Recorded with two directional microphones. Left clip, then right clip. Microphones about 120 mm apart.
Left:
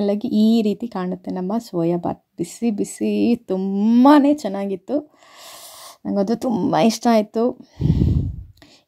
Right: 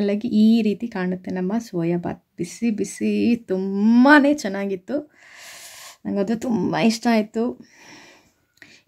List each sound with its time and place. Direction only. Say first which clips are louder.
0.0 s speech: left 1 dB; 35° left (ahead or behind)
6.7 s speech: left 5 dB; 55° left (ahead or behind)
7.8 s a sound: left 19 dB; 30° left (ahead or behind)